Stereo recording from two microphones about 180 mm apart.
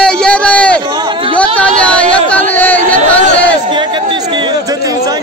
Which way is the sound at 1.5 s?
5° left (ahead or behind).